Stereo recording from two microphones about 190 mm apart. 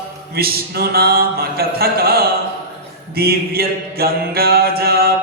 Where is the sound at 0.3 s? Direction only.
55° right (ahead or behind).